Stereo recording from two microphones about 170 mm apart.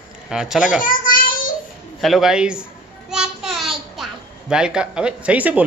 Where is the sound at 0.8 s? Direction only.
55° left (ahead or behind).